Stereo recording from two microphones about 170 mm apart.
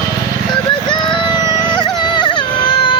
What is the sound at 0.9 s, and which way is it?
Music, 25° left (ahead or behind).